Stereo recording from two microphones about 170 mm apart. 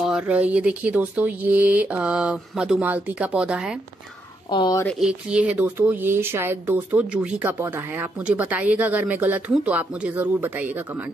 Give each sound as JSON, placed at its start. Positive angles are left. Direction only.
{"t": 0.0, "sound": "speech", "side_deg": -5}
{"t": 4.5, "sound": "speech", "side_deg": 25}
{"t": 4.8, "sound": "speech", "side_deg": -5}